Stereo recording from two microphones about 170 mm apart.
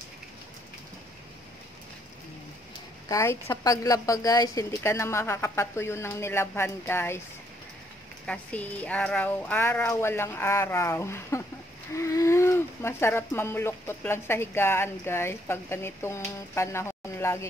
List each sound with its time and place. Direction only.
3.1 s speech: 15° left (ahead or behind)
8.3 s speech: 10° left (ahead or behind)